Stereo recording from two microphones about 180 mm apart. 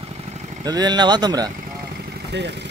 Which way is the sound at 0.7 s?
20° right (ahead or behind).